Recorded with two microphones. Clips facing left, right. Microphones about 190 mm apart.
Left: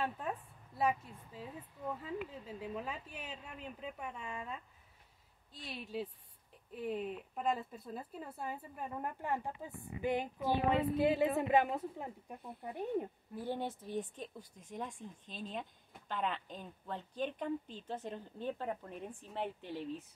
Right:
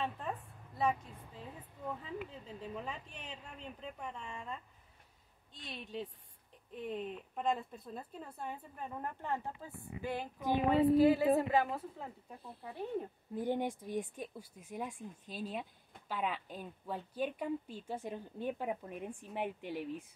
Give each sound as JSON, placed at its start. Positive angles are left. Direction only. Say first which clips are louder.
{"t": 2.0, "sound": "speech", "louder": "left 2 dB", "side_deg": 5}
{"t": 10.4, "sound": "a woman's voice", "louder": "right 4 dB", "side_deg": -15}
{"t": 11.0, "sound": "a woman's voice", "louder": "right 4 dB", "side_deg": 20}
{"t": 13.3, "sound": "a woman's voice", "louder": "right 6 dB", "side_deg": -15}